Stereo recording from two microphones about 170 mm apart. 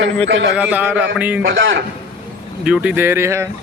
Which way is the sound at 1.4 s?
90° right.